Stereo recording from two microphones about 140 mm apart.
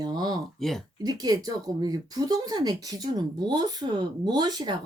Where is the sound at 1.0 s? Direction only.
30° right (ahead or behind).